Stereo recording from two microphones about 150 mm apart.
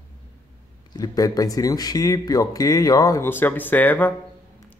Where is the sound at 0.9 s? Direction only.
25° left (ahead or behind).